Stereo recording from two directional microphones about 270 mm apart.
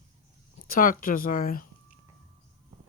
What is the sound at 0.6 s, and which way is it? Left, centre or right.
Speech, left.